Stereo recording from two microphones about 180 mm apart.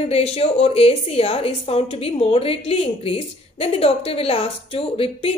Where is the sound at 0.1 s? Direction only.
35° left (ahead or behind).